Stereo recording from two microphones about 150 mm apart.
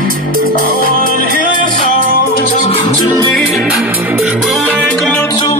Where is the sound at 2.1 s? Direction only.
60° left (ahead or behind).